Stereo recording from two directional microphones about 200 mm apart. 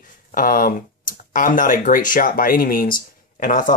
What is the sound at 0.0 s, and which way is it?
Speech, 45° left (ahead or behind).